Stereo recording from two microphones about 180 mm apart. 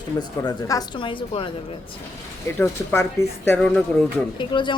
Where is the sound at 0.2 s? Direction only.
20° left (ahead or behind).